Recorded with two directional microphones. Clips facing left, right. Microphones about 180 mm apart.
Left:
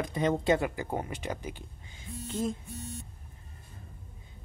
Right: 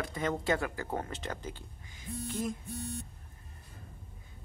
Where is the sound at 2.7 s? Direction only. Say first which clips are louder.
Right 2 dB; 60° right (ahead or behind).